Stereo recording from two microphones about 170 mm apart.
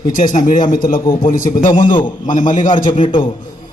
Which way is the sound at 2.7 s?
30° left (ahead or behind).